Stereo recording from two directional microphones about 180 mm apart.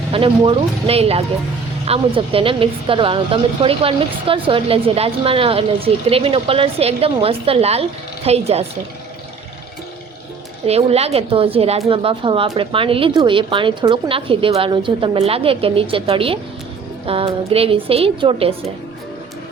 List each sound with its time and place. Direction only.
0.1 s speech: 30° right (ahead or behind)
10.7 s speech: 35° right (ahead or behind)